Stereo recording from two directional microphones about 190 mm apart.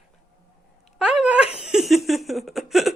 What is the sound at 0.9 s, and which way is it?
A woman's voice, 5° right (ahead or behind).